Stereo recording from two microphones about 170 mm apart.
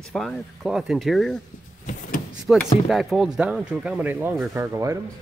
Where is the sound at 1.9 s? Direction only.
50° left (ahead or behind).